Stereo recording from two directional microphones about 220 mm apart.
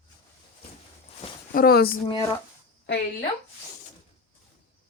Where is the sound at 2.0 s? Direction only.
15° left (ahead or behind).